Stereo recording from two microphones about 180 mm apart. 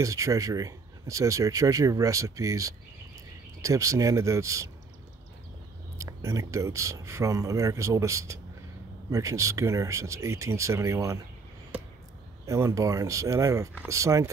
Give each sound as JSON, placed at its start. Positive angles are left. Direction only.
{"t": 0.0, "sound": "speech", "side_deg": -15}
{"t": 5.9, "sound": "speech", "side_deg": -15}
{"t": 12.4, "sound": "speech", "side_deg": -15}